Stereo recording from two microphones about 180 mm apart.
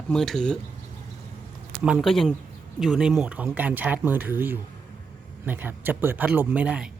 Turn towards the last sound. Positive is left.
turn(degrees=-5)  # may be behind; listen again after turning